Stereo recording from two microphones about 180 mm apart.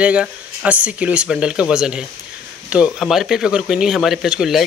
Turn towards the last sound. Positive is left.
turn(degrees=-5)  # may be behind; listen again after turning